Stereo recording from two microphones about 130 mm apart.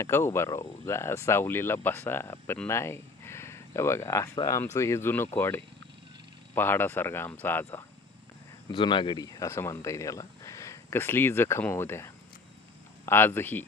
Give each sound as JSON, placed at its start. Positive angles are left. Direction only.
{"t": 0.0, "sound": "speech", "side_deg": 20}
{"t": 8.7, "sound": "speech", "side_deg": 40}